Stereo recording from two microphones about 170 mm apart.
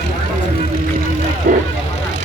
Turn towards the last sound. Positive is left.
turn(degrees=-45)  # may be behind; listen again after turning